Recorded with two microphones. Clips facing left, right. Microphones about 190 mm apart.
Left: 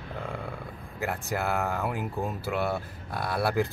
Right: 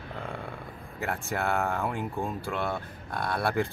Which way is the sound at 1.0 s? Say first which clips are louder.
Left 1 dB; centre (ahead or behind).